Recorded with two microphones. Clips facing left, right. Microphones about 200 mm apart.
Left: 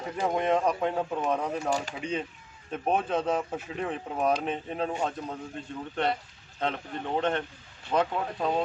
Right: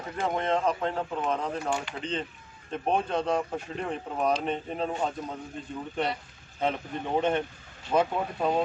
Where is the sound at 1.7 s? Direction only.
40° left (ahead or behind).